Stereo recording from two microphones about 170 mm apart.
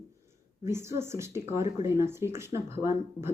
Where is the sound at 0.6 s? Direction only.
15° right (ahead or behind).